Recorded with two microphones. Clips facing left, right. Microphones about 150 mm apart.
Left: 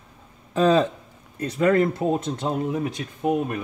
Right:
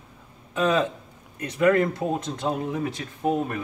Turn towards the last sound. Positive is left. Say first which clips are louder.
# left 1 dB
turn(degrees=15)  # may be behind; listen again after turning